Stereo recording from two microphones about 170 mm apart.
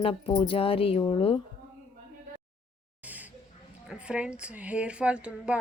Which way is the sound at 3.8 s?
5° right (ahead or behind).